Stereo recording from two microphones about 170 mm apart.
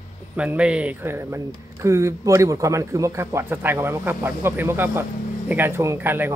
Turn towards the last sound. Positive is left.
turn(degrees=-10)  # may be behind; listen again after turning